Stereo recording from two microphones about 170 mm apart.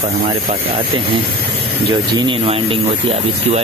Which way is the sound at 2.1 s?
25° right (ahead or behind).